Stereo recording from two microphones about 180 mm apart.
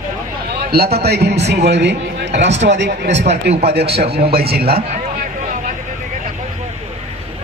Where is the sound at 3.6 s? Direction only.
65° right (ahead or behind).